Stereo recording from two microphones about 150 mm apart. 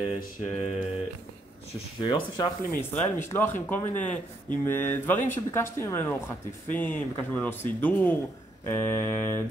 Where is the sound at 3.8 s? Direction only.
55° left (ahead or behind).